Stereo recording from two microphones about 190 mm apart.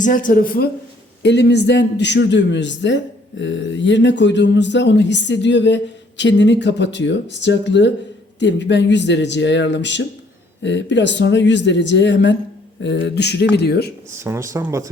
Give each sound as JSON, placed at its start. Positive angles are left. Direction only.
{"t": 0.0, "sound": "speech", "side_deg": 45}
{"t": 1.2, "sound": "a man's voice", "side_deg": 65}
{"t": 14.2, "sound": "speech", "side_deg": -15}